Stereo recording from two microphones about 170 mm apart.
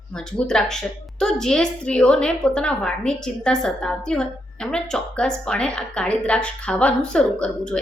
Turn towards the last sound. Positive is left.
turn(degrees=5)  # may be behind; listen again after turning